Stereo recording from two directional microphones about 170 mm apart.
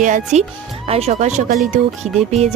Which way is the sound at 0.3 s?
45° right (ahead or behind).